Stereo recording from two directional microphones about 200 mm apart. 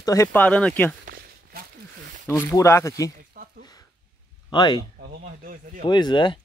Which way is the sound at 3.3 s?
45° right (ahead or behind).